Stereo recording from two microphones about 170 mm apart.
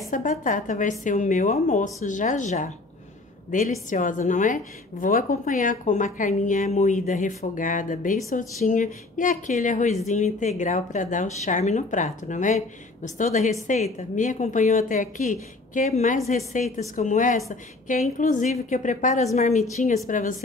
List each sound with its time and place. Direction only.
0.1 s speech: 50° left (ahead or behind)
3.9 s a woman's voice: 50° left (ahead or behind)